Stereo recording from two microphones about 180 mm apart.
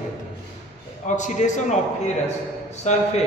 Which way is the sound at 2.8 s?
40° left (ahead or behind).